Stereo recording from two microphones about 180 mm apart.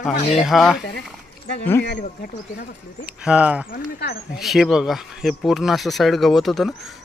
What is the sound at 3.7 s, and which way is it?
Speech, 60° left (ahead or behind).